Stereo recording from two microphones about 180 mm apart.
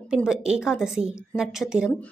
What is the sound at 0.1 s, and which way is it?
A woman's voice, 5° right (ahead or behind).